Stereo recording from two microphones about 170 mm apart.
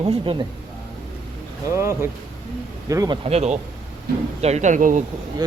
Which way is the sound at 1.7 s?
15° right (ahead or behind).